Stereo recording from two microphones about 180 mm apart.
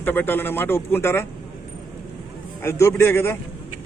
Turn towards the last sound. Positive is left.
turn(degrees=15)  # may be behind; listen again after turning